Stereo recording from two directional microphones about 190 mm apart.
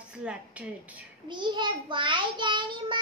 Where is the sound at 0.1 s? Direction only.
5° right (ahead or behind).